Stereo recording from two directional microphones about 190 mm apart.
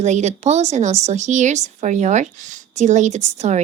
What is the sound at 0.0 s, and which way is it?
Speech, 35° right (ahead or behind).